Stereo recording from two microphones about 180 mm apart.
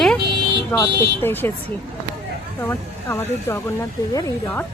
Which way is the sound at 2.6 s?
15° left (ahead or behind).